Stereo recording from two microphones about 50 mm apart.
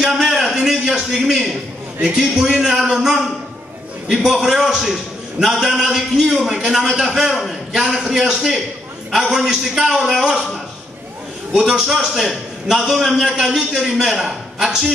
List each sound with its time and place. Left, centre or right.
0.1 s a sound: centre
2.0 s a man's voice: centre
9.1 s a man's voice: centre
11.5 s a man's voice: centre